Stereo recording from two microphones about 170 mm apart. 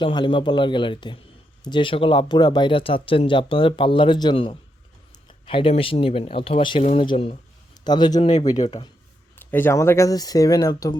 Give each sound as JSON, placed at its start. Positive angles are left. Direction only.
{"t": 0.0, "sound": "speech", "side_deg": 30}
{"t": 9.3, "sound": "speech", "side_deg": 10}